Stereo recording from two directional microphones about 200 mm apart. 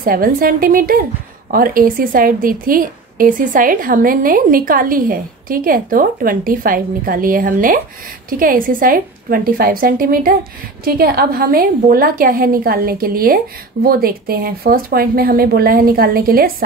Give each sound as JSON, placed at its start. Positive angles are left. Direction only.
{"t": 0.0, "sound": "a woman's voice", "side_deg": -45}